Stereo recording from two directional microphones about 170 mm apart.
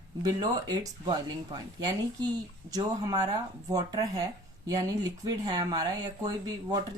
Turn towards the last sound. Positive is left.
turn(degrees=-25)  # may be behind; listen again after turning